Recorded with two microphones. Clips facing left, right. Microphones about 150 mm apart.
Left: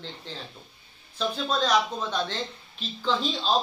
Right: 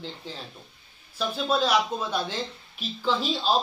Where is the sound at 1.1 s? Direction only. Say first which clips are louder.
Right 2 dB; 5° right (ahead or behind).